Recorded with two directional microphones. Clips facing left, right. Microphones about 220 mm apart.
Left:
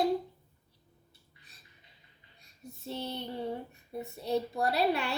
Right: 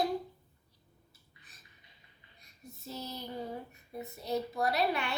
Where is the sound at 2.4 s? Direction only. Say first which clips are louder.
Left 4 dB; 30° left (ahead or behind).